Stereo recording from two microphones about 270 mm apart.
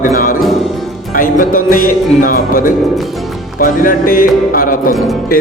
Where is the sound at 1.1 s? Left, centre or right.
Left.